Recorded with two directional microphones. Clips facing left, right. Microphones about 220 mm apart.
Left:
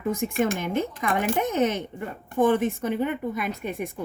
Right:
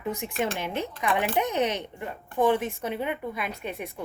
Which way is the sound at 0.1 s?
45° left (ahead or behind).